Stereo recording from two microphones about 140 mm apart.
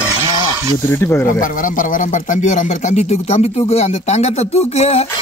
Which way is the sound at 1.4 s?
75° left (ahead or behind).